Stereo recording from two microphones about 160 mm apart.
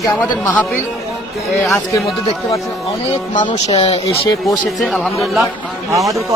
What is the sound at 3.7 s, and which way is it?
Speech, 35° left (ahead or behind).